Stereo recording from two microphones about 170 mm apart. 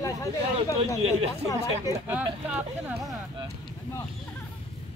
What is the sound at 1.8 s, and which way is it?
Speech, 15° right (ahead or behind).